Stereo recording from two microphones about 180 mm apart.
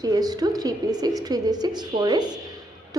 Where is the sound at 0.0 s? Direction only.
20° right (ahead or behind).